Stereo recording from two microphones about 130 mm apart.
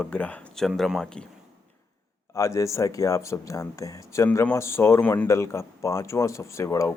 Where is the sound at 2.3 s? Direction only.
25° left (ahead or behind).